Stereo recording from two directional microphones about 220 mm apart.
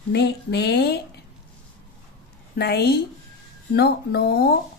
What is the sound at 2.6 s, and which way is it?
Speech, 45° left (ahead or behind).